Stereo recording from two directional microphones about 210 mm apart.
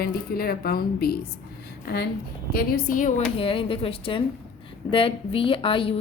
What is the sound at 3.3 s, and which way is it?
A woman's voice, 25° left (ahead or behind).